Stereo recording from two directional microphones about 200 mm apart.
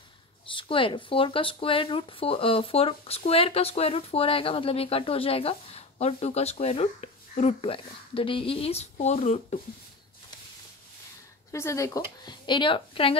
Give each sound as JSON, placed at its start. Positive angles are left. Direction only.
{"t": 0.5, "sound": "speech", "side_deg": 25}
{"t": 11.5, "sound": "speech", "side_deg": 15}